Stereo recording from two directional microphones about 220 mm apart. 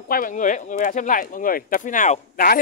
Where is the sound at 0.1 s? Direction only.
35° left (ahead or behind).